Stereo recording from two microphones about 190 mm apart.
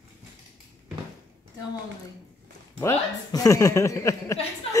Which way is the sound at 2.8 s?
20° left (ahead or behind).